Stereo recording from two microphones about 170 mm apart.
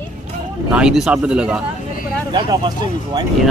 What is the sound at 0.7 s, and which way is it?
Speech, 5° right (ahead or behind).